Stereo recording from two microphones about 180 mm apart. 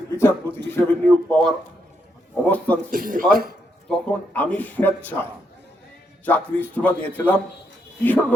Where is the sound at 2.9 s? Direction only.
50° right (ahead or behind).